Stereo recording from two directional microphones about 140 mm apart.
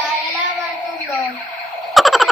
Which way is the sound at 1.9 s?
Centre (ahead or behind).